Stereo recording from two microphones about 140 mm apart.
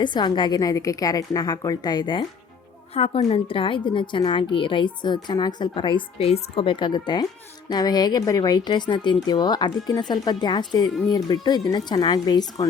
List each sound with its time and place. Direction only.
0.0 s speech: 35° left (ahead or behind)
2.9 s a woman's voice: 45° left (ahead or behind); by 12.6 s 30° left (ahead or behind)